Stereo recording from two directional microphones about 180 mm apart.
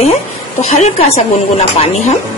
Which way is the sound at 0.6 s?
40° left (ahead or behind).